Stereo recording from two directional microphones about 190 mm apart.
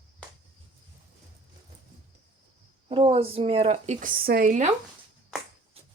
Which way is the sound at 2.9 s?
30° right (ahead or behind).